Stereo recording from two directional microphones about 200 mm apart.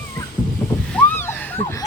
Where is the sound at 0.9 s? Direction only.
10° left (ahead or behind).